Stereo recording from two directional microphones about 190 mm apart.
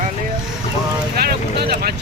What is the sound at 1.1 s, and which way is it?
Vehicle, 55° right (ahead or behind).